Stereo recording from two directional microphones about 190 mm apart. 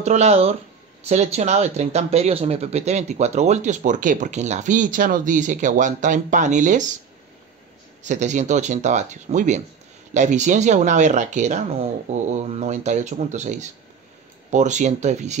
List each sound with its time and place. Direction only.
0.0 s speech: 35° right (ahead or behind)
8.0 s speech: 40° right (ahead or behind)